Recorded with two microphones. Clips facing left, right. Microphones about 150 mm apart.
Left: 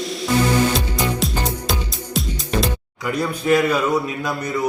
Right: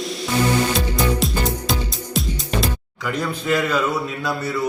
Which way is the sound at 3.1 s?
10° left (ahead or behind).